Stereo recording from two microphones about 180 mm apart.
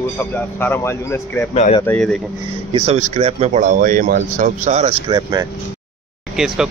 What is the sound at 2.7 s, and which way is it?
Speech, 35° right (ahead or behind).